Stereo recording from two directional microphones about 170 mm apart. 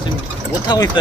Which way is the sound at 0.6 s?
25° left (ahead or behind).